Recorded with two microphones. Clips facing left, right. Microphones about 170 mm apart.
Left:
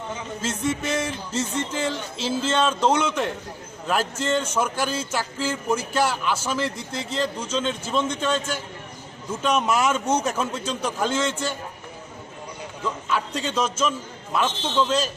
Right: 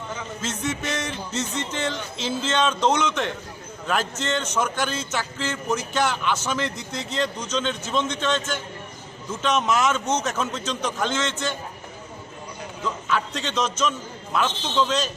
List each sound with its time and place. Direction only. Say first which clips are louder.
0.4 s speech: left 3 dB; 5° left (ahead or behind)
12.8 s speech: even; 5° left (ahead or behind)